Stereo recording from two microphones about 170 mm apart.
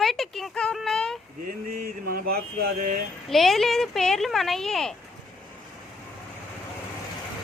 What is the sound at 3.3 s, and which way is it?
A child's voice, centre (ahead or behind).